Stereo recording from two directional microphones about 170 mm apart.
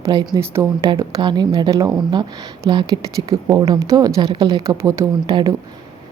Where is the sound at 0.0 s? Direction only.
25° right (ahead or behind).